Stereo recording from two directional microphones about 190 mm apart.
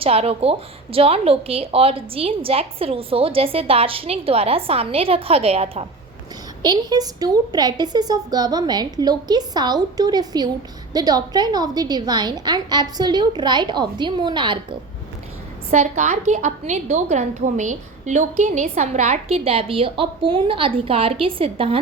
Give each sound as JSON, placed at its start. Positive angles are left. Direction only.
{"t": 0.0, "sound": "a woman's voice", "side_deg": -30}
{"t": 6.6, "sound": "a woman's voice", "side_deg": -20}
{"t": 15.7, "sound": "a woman's voice", "side_deg": -35}